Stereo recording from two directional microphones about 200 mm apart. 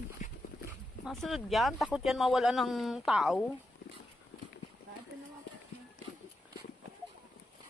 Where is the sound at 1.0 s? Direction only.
Centre (ahead or behind).